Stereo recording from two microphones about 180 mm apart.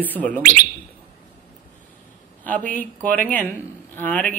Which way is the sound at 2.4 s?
10° left (ahead or behind).